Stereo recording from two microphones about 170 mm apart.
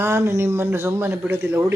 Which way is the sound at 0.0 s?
15° right (ahead or behind).